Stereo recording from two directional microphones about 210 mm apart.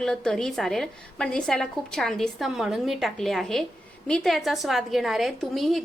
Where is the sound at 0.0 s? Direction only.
Centre (ahead or behind).